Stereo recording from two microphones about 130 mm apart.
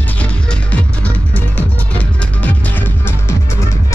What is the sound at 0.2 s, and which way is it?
Music, 10° left (ahead or behind).